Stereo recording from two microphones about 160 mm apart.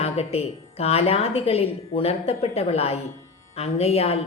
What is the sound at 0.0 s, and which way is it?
A woman's voice, 40° left (ahead or behind).